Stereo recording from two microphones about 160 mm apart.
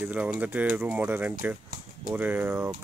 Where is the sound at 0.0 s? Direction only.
10° right (ahead or behind).